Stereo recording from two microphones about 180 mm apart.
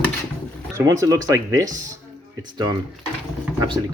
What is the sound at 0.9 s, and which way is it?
Speech, 20° right (ahead or behind).